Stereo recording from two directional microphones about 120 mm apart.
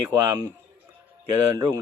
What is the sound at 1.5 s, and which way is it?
Speech, 35° right (ahead or behind).